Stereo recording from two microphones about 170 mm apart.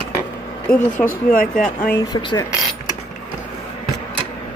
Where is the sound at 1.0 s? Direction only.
55° left (ahead or behind).